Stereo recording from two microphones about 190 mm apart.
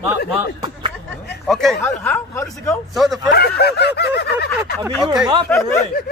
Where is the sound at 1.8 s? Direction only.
10° left (ahead or behind).